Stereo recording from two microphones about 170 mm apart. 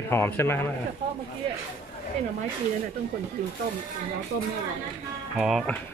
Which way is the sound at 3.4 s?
50° right (ahead or behind).